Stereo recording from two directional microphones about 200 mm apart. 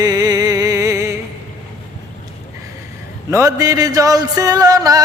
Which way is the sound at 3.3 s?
15° right (ahead or behind).